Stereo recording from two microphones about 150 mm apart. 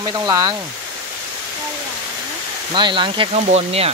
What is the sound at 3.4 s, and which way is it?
Speech, 45° right (ahead or behind).